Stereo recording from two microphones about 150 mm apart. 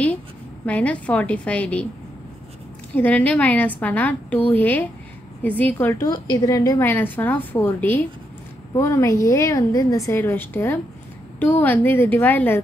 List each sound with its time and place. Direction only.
0.7 s a woman's voice: 10° left (ahead or behind)
2.9 s a woman's voice: 10° left (ahead or behind)
6.0 s a woman's voice: 25° left (ahead or behind)